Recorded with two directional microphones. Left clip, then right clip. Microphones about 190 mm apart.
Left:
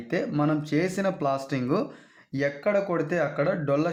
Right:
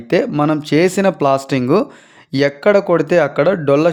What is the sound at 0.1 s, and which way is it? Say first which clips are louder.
Speech: right 11 dB; 45° right (ahead or behind).